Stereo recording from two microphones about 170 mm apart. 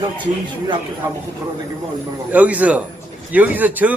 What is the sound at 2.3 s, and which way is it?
A man's voice, 10° right (ahead or behind).